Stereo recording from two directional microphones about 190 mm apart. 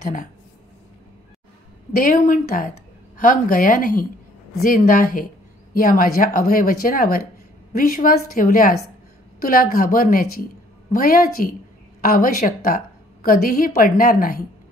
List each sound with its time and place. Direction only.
0.0 s speech: 45° left (ahead or behind)
2.0 s a woman's voice: 45° left (ahead or behind)